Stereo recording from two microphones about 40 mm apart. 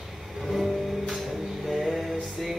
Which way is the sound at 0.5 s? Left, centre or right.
Centre.